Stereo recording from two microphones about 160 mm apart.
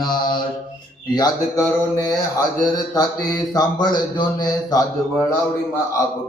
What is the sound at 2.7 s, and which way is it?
Speech, 25° left (ahead or behind).